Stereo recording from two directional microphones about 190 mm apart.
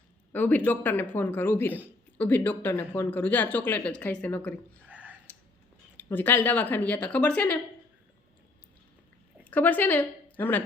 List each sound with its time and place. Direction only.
0.3 s speech: 10° left (ahead or behind)
4.9 s a sound: 5° right (ahead or behind)
6.0 s speech: 10° left (ahead or behind)
9.4 s speech: 10° left (ahead or behind)